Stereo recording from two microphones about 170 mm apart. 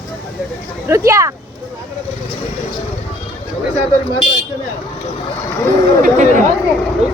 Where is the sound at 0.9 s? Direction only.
15° right (ahead or behind).